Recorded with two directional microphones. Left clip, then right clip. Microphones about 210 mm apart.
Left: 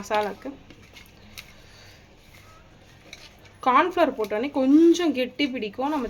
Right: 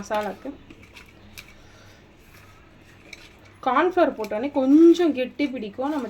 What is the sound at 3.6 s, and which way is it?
Speech, 20° left (ahead or behind).